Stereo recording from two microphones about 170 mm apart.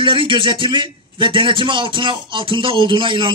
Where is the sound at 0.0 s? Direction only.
30° right (ahead or behind).